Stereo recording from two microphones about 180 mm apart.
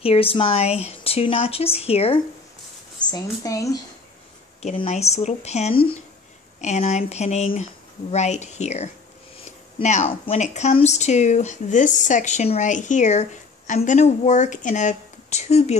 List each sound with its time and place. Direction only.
0.0 s speech: 30° left (ahead or behind)
3.1 s speech: 20° left (ahead or behind)
4.6 s speech: 35° left (ahead or behind)